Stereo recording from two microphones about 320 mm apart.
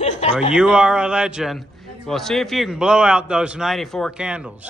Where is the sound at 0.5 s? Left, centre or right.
Centre.